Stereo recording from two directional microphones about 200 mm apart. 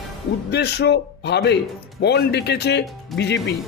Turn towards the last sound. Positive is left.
turn(degrees=60)  # may be behind; listen again after turning